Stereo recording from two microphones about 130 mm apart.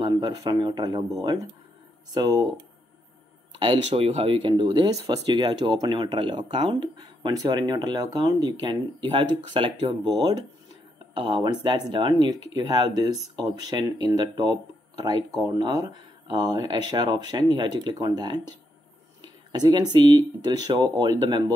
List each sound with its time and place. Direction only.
0.0 s speech: 30° right (ahead or behind)
2.1 s speech: 30° right (ahead or behind)
3.5 s speech: 40° right (ahead or behind)
19.2 s a sound: 30° right (ahead or behind)
20.7 s speech: 35° right (ahead or behind)